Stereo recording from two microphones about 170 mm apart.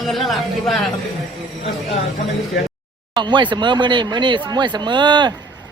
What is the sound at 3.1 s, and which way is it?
Speech, 25° right (ahead or behind).